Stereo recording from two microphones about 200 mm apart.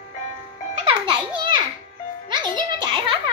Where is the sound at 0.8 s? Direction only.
25° right (ahead or behind).